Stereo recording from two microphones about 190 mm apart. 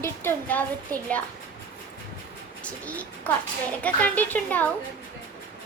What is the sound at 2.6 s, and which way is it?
A child's voice, 5° left (ahead or behind).